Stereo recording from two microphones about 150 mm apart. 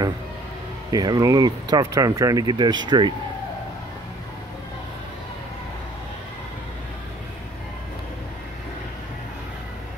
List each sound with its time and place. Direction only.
0.9 s speech: 25° right (ahead or behind)